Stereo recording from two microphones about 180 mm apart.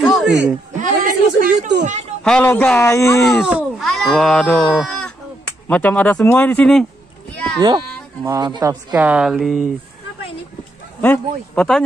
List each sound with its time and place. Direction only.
0.0 s a sound: centre (ahead or behind)
0.7 s a sound: 50° right (ahead or behind)
2.2 s a man's voice: 10° left (ahead or behind)
3.4 s speech: 5° right (ahead or behind)
4.7 s a sound: 5° left (ahead or behind)
5.7 s a man's voice: 10° left (ahead or behind)
7.6 s speech: 20° right (ahead or behind)
8.9 s speech: 10° right (ahead or behind)
11.0 s speech: 10° left (ahead or behind)